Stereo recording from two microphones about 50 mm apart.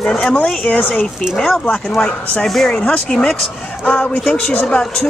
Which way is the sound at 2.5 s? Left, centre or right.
Centre.